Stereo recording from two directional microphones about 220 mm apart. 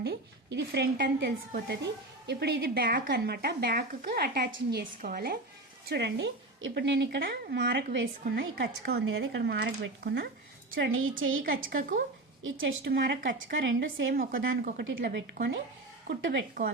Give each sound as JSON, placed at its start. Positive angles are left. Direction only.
{"t": 0.0, "sound": "a woman's voice", "side_deg": -50}
{"t": 11.8, "sound": "speech", "side_deg": -40}
{"t": 12.4, "sound": "a woman's voice", "side_deg": -60}
{"t": 14.6, "sound": "speech", "side_deg": -40}
{"t": 14.8, "sound": "a woman's voice", "side_deg": -55}
{"t": 16.0, "sound": "speech", "side_deg": -40}